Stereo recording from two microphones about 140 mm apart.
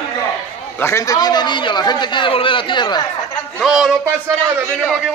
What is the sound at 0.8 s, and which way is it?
A man's voice, 20° left (ahead or behind).